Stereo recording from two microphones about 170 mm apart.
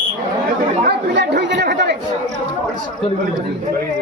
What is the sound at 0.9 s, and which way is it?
Chatter, 85° right.